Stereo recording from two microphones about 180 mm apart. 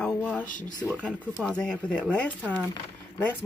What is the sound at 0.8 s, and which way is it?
Speech, 5° left (ahead or behind).